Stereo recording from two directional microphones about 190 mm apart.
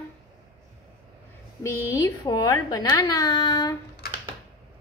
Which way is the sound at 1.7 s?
15° left (ahead or behind).